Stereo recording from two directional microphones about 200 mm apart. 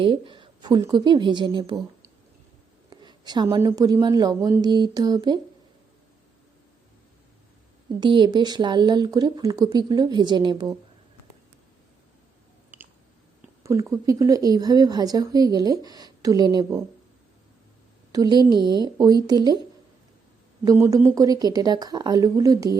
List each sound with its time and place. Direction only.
0.0 s a woman's voice: 25° right (ahead or behind)
7.9 s a woman's voice: 20° right (ahead or behind)
12.7 s a sound: 10° right (ahead or behind)
13.9 s a woman's voice: 15° right (ahead or behind)
18.1 s a woman's voice: 20° right (ahead or behind)
20.7 s a woman's voice: 15° right (ahead or behind)